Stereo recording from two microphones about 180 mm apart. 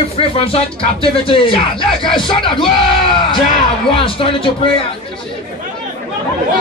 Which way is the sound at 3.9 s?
30° left (ahead or behind).